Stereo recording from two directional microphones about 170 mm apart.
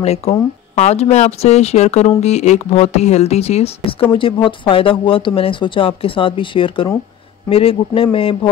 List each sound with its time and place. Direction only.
0.0 s speech: 35° left (ahead or behind)